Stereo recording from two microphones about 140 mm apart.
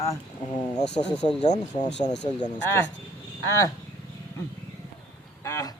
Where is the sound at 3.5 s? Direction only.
20° left (ahead or behind).